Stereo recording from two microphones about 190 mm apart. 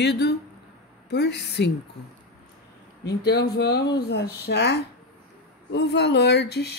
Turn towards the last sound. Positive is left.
turn(degrees=60)  # may be behind; listen again after turning